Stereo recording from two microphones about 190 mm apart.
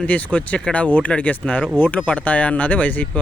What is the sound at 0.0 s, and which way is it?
Speech, 5° left (ahead or behind).